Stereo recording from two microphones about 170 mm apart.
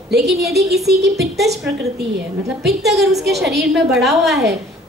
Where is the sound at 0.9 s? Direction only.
75° right (ahead or behind).